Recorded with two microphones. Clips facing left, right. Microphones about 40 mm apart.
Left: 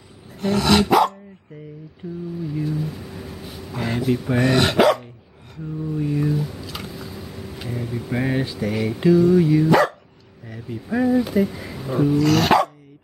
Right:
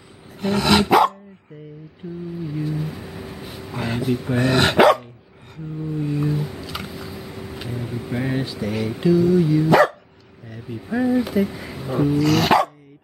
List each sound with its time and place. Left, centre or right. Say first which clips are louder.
0.4 s dog: even; centre
2.3 s a sound: left 1 dB; centre
4.4 s speech: right 2 dB; centre
6.0 s a sound: left 1 dB; centre
8.1 s speech: left 2 dB; centre
8.5 s speech: left 1 dB; centre
9.1 s dog: left 1 dB; centre
9.6 s speech: right 1 dB; centre
10.5 s a sound: left 1 dB; centre
11.1 s speech: left 1 dB; centre